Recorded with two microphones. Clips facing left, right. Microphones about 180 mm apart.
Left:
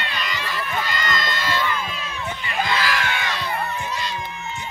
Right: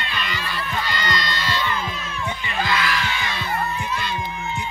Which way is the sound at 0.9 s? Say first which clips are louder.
Even; 45° left (ahead or behind).